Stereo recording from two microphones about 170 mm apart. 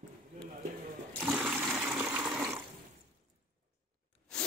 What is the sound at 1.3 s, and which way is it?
Toilet flush, 5° right (ahead or behind).